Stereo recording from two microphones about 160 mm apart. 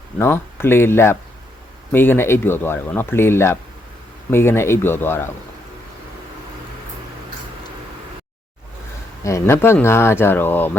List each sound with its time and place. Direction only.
0.2 s speech: 15° left (ahead or behind)
9.2 s speech: 15° left (ahead or behind)